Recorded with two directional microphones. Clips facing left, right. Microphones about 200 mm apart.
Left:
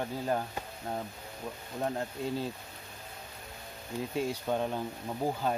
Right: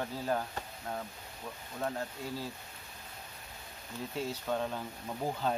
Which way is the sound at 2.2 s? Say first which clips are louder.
Left 6 dB; 20° left (ahead or behind).